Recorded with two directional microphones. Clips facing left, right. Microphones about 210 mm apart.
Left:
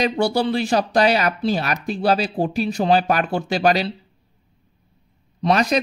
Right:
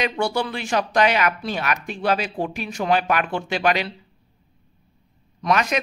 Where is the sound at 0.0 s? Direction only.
35° left (ahead or behind).